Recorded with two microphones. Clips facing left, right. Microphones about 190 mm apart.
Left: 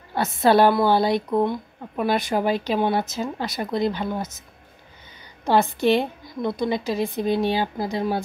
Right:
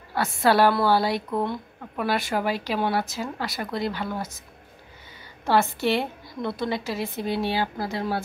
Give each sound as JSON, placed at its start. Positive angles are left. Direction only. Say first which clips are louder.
{"t": 0.1, "sound": "a woman's voice", "louder": "left 3 dB", "side_deg": 20}
{"t": 5.4, "sound": "a woman's voice", "louder": "left 3 dB", "side_deg": 15}